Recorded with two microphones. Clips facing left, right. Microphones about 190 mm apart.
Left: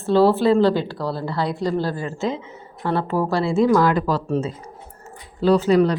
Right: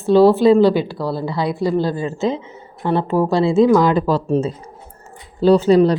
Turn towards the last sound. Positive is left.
turn(degrees=-30)  # may be behind; listen again after turning